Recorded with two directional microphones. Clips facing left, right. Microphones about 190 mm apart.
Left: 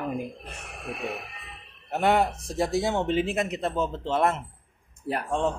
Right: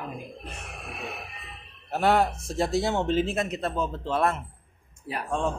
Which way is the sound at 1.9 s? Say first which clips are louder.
Even; 15° left (ahead or behind).